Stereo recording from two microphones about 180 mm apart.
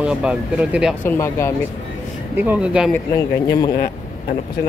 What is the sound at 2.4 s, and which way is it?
Speech, 5° right (ahead or behind).